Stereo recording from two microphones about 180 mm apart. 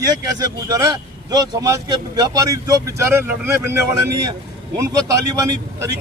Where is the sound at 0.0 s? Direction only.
20° right (ahead or behind).